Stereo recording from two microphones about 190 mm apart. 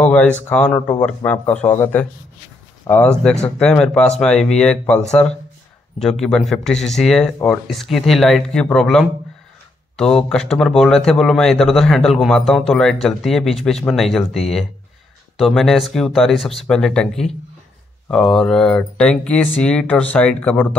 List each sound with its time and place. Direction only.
0.0 s a man's voice: 5° left (ahead or behind)